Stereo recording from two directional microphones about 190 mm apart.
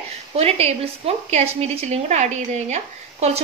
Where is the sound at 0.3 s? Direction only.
35° right (ahead or behind).